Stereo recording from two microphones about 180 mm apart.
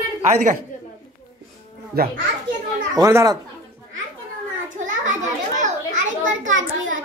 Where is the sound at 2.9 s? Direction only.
20° right (ahead or behind).